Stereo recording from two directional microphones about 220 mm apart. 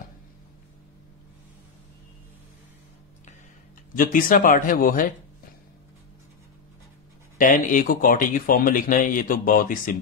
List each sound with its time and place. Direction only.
3.9 s speech: 40° left (ahead or behind)
7.3 s speech: 35° left (ahead or behind)